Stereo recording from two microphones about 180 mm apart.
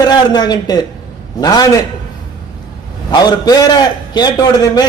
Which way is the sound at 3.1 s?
20° left (ahead or behind).